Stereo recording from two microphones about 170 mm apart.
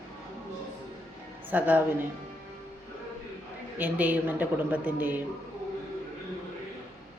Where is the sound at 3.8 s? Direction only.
10° right (ahead or behind).